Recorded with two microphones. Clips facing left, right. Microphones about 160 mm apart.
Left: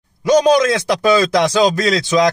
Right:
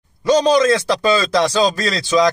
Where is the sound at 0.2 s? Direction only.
15° left (ahead or behind).